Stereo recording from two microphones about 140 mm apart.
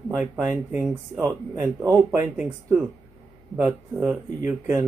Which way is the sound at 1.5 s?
20° right (ahead or behind).